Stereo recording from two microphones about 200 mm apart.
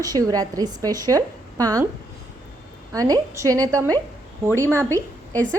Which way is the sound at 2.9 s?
20° right (ahead or behind).